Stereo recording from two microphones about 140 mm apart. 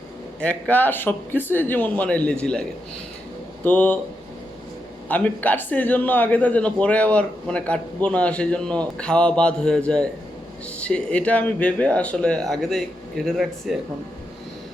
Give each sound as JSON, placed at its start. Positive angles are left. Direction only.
{"t": 0.3, "sound": "a man's voice", "side_deg": 10}
{"t": 5.0, "sound": "a man's voice", "side_deg": 10}